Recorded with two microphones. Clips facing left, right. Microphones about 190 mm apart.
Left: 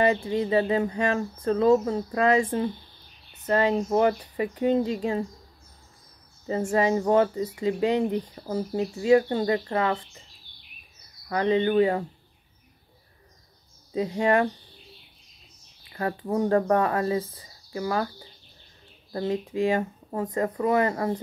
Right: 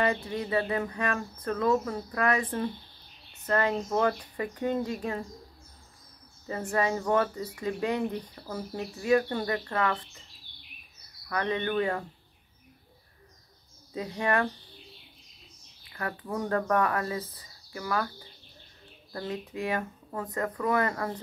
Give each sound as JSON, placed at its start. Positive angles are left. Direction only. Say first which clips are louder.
{"t": 0.0, "sound": "speech", "louder": "left 6 dB", "side_deg": 25}
{"t": 6.4, "sound": "speech", "louder": "left 5 dB", "side_deg": 25}
{"t": 11.2, "sound": "speech", "louder": "left 7 dB", "side_deg": 25}
{"t": 13.9, "sound": "speech", "louder": "left 6 dB", "side_deg": 25}
{"t": 15.9, "sound": "speech", "louder": "left 7 dB", "side_deg": 30}
{"t": 19.1, "sound": "speech", "louder": "left 8 dB", "side_deg": 25}